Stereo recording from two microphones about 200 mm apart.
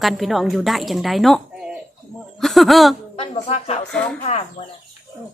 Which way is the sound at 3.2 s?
30° left (ahead or behind).